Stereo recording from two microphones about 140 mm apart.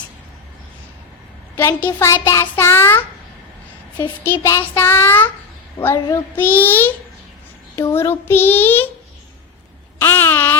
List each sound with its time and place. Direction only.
1.5 s a child's voice: 15° left (ahead or behind)
4.3 s a child's voice: 20° left (ahead or behind)
10.0 s a sound: 15° left (ahead or behind)